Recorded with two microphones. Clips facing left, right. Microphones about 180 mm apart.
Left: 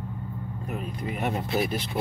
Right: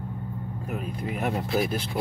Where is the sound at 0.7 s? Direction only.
Centre (ahead or behind).